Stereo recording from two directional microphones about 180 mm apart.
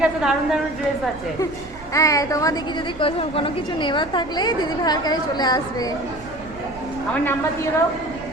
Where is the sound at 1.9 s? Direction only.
20° left (ahead or behind).